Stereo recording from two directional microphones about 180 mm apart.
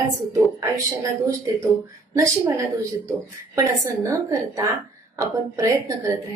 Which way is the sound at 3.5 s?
20° right (ahead or behind).